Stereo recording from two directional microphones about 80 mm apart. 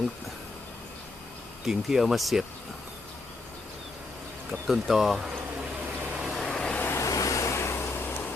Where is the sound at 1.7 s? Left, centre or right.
Centre.